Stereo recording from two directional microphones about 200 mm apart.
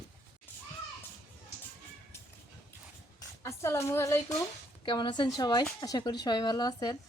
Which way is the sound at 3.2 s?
15° left (ahead or behind).